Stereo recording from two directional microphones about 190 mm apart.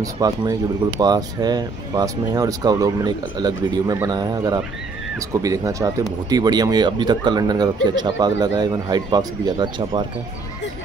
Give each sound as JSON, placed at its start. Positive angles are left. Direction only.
{"t": 0.0, "sound": "speech", "side_deg": -20}